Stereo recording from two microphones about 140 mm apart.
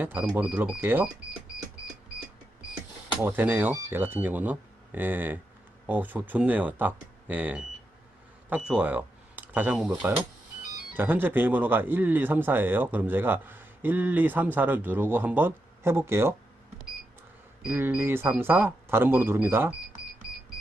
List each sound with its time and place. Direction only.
0.0 s speech: 15° right (ahead or behind)
3.2 s speech: 15° right (ahead or behind)
10.9 s speech: 15° right (ahead or behind)
17.7 s speech: 15° right (ahead or behind)